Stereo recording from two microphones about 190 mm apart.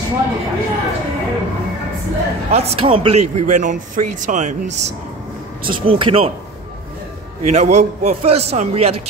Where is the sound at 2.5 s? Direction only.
30° right (ahead or behind).